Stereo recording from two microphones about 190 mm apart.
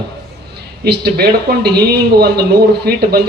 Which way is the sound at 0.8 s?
60° right (ahead or behind).